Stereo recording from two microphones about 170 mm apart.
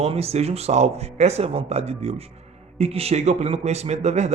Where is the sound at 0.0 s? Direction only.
35° right (ahead or behind).